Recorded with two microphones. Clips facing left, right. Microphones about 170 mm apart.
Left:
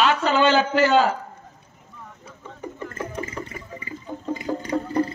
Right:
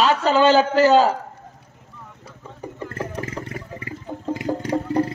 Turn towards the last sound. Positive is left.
turn(degrees=-80)